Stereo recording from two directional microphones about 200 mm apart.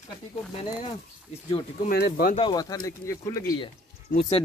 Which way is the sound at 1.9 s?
50° left (ahead or behind).